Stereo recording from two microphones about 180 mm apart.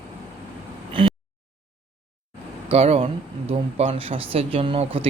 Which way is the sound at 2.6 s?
35° right (ahead or behind).